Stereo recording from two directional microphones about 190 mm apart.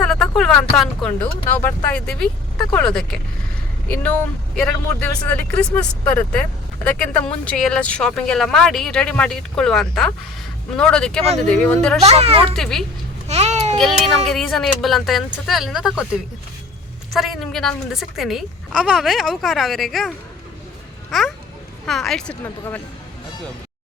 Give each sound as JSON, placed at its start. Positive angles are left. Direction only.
{"t": 0.0, "sound": "speech", "side_deg": 5}
{"t": 12.0, "sound": "speech", "side_deg": -30}
{"t": 12.5, "sound": "speech", "side_deg": 0}
{"t": 13.2, "sound": "babbling", "side_deg": -35}
{"t": 14.3, "sound": "speech", "side_deg": 0}
{"t": 17.2, "sound": "speech", "side_deg": 0}